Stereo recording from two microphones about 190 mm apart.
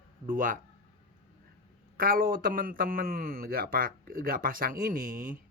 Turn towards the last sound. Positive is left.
turn(degrees=-45)  # may be behind; listen again after turning